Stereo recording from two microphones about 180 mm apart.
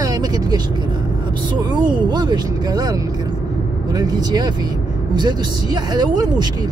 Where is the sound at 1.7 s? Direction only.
25° right (ahead or behind).